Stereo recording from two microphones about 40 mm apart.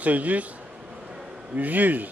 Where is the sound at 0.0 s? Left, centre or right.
Right.